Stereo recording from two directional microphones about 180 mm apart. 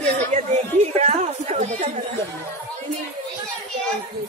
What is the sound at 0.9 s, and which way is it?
Speech, 40° right (ahead or behind).